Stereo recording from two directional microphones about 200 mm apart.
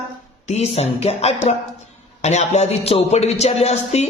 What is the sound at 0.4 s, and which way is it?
Speech, 30° left (ahead or behind).